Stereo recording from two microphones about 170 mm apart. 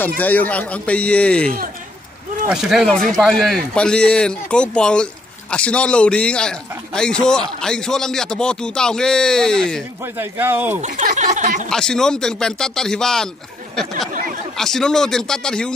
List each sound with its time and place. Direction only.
0.2 s a man's voice: 10° left (ahead or behind)
10.0 s speech: 15° right (ahead or behind)
10.8 s speech: 45° right (ahead or behind)
11.7 s a man's voice: 5° left (ahead or behind)